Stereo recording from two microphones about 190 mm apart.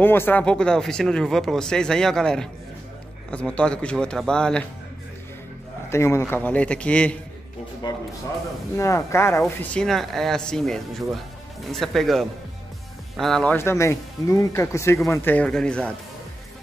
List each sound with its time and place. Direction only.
0.0 s speech: 10° left (ahead or behind)
5.9 s speech: 15° left (ahead or behind)
7.8 s speech: 25° left (ahead or behind); by 15.9 s 5° left (ahead or behind)